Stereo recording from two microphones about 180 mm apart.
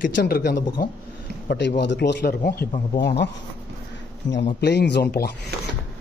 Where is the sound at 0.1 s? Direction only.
65° left (ahead or behind).